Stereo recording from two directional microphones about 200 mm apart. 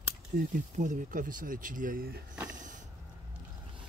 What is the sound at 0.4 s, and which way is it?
Speech, 40° right (ahead or behind).